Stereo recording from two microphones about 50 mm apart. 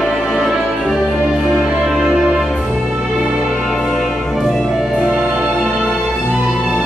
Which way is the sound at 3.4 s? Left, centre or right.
Centre.